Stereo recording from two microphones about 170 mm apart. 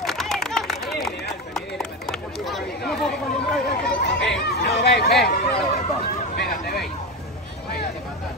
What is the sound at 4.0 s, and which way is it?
Chatter, 80° left.